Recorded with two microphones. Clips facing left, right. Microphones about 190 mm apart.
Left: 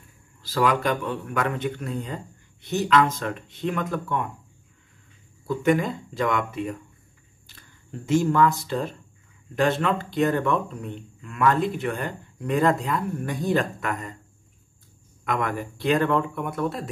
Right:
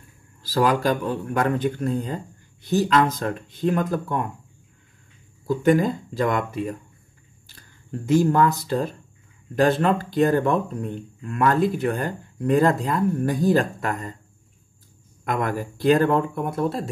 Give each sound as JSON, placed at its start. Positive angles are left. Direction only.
{"t": 0.4, "sound": "speech", "side_deg": -35}
{"t": 5.6, "sound": "speech", "side_deg": -35}
{"t": 8.1, "sound": "speech", "side_deg": -40}
{"t": 15.2, "sound": "speech", "side_deg": -35}